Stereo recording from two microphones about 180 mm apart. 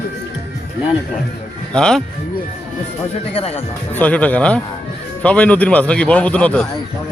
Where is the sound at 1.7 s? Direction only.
5° left (ahead or behind).